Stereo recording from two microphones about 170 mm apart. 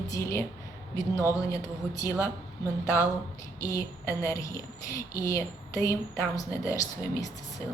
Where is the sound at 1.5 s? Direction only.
20° left (ahead or behind).